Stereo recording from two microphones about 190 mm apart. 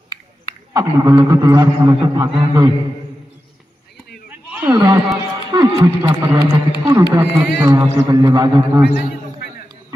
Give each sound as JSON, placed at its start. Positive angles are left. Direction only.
{"t": 0.7, "sound": "a man's voice", "side_deg": -20}
{"t": 4.3, "sound": "a sound", "side_deg": -10}
{"t": 4.7, "sound": "a man's voice", "side_deg": -20}